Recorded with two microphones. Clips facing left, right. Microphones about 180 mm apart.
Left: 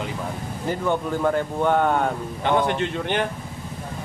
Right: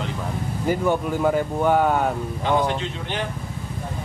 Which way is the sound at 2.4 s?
60° left (ahead or behind).